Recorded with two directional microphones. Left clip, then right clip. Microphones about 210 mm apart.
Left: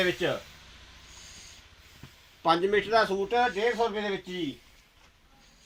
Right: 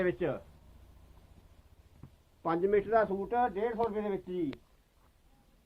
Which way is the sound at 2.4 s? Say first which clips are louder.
Left 5 dB; 40° left (ahead or behind).